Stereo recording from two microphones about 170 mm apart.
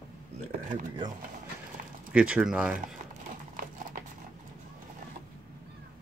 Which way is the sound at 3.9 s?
55° right (ahead or behind).